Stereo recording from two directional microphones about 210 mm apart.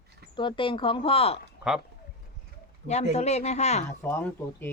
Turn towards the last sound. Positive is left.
turn(degrees=10)  # may be behind; listen again after turning